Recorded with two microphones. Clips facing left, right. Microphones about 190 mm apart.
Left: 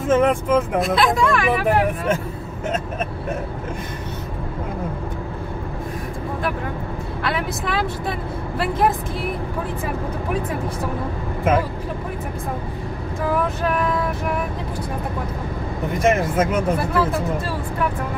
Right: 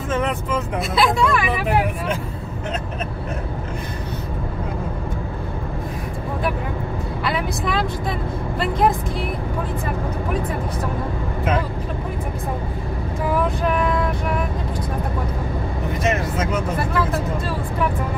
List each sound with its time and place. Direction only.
0.1 s speech: 50° left (ahead or behind)
0.9 s speech: centre (ahead or behind)
7.2 s speech: centre (ahead or behind)
16.0 s speech: 50° left (ahead or behind)